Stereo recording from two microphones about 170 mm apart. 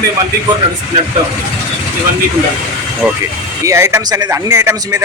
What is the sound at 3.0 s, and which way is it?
Speech, centre (ahead or behind).